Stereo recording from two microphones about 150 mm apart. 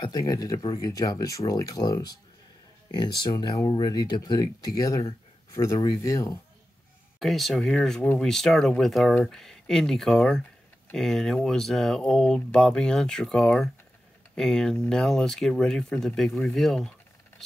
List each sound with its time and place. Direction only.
0.0 s speech: 25° left (ahead or behind)
7.2 s speech: centre (ahead or behind)